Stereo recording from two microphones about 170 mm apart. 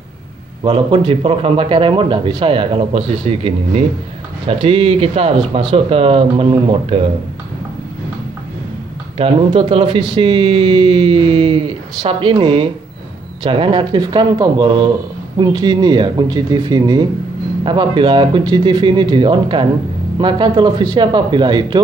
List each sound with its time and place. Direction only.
0.7 s speech: 30° right (ahead or behind)
9.2 s speech: 35° right (ahead or behind)